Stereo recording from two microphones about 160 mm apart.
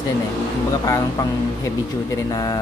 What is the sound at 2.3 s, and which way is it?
Speech, 25° left (ahead or behind).